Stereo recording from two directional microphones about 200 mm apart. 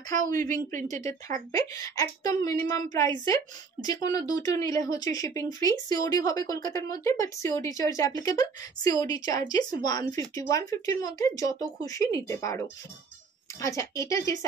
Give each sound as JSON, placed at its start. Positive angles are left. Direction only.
{"t": 0.1, "sound": "speech", "side_deg": -40}
{"t": 1.5, "sound": "speech", "side_deg": 15}